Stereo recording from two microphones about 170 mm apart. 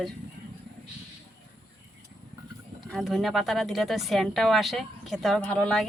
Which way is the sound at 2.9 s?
Centre (ahead or behind).